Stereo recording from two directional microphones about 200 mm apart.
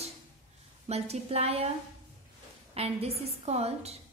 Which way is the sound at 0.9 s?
30° right (ahead or behind).